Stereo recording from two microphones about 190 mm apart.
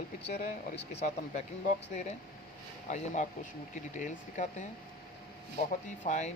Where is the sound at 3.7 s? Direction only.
40° left (ahead or behind).